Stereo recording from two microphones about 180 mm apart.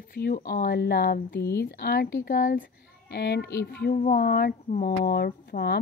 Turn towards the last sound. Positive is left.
turn(degrees=60)  # may be behind; listen again after turning